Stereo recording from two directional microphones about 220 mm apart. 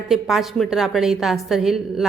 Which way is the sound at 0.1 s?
Centre (ahead or behind).